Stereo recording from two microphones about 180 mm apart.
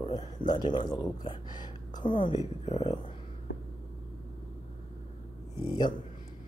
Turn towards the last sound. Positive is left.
turn(degrees=25)  # may be behind; listen again after turning